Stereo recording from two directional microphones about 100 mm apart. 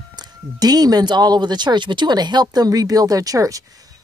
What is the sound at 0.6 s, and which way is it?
Speech, 40° right (ahead or behind).